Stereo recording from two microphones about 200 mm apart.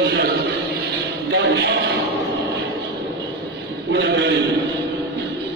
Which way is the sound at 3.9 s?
60° right (ahead or behind).